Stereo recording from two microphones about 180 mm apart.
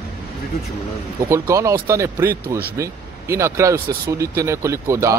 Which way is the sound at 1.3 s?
15° right (ahead or behind).